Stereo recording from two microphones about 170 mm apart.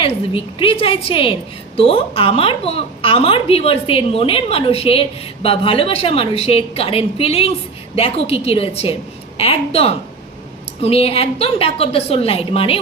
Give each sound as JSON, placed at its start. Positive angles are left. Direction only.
{"t": 0.3, "sound": "a woman's voice", "side_deg": 30}